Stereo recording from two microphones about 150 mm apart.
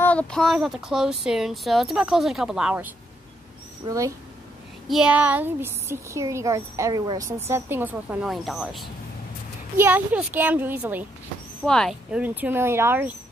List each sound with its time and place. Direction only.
0.0 s speech: 10° left (ahead or behind); by 2.9 s 10° right (ahead or behind)
3.8 s speech: 20° right (ahead or behind)
4.8 s speech: 5° right (ahead or behind)
8.3 s speech: centre (ahead or behind)
9.8 s speech: 15° right (ahead or behind)
11.6 s speech: 5° left (ahead or behind); by 13.1 s 15° right (ahead or behind)